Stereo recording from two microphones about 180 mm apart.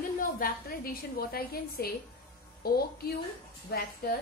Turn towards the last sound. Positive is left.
turn(degrees=55)  # may be behind; listen again after turning